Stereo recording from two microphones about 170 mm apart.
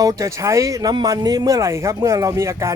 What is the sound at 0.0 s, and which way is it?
Speech, 20° right (ahead or behind).